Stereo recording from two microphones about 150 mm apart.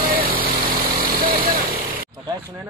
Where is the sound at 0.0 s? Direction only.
75° right (ahead or behind).